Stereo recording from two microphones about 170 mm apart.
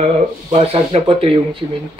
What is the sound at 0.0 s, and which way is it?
Speech, 35° right (ahead or behind).